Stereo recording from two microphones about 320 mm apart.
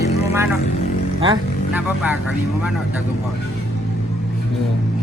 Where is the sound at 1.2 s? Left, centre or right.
Centre.